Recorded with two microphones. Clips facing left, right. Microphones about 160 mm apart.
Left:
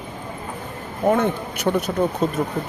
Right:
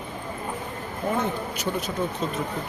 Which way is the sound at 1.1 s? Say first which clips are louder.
Left 7 dB; 60° left (ahead or behind).